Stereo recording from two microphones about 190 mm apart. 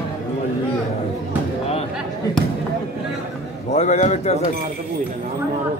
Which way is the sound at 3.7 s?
35° left (ahead or behind).